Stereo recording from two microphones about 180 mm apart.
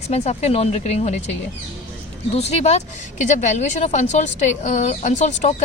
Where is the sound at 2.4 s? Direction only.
35° left (ahead or behind).